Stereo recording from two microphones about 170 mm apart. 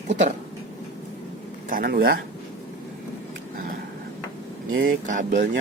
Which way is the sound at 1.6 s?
60° right (ahead or behind).